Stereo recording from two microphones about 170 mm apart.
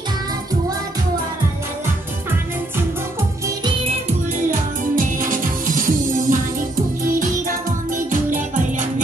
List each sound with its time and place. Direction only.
4.5 s music: 50° right (ahead or behind)